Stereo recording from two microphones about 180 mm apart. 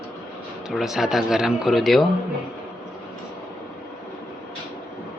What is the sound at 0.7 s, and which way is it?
Speech, centre (ahead or behind).